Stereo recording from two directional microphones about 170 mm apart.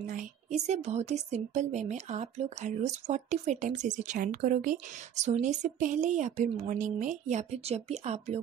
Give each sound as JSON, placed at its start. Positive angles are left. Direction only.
{"t": 0.0, "sound": "a woman's voice", "side_deg": -45}